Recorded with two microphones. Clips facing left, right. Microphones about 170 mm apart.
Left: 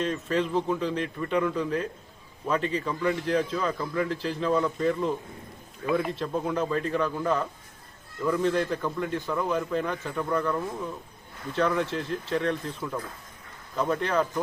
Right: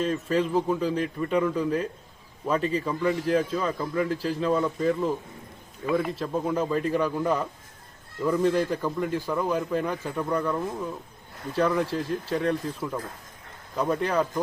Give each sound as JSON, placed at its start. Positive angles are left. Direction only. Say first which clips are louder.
{"t": 0.0, "sound": "a man's voice", "louder": "right 2 dB", "side_deg": -10}